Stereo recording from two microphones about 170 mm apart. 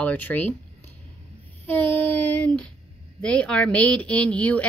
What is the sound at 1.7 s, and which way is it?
Child singing, 10° left (ahead or behind).